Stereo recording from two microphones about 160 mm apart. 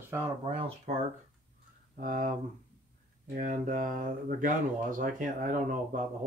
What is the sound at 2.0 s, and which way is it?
Speech, 55° right (ahead or behind).